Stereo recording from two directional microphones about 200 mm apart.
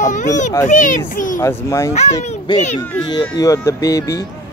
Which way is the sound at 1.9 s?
35° left (ahead or behind).